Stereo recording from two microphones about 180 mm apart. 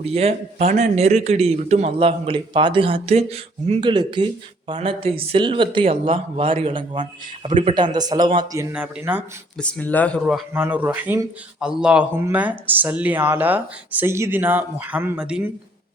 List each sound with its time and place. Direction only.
0.0 s a man's voice: 35° right (ahead or behind)
8.7 s speech: 5° right (ahead or behind)
9.6 s speech: 5° left (ahead or behind)
10.5 s speech: 10° right (ahead or behind)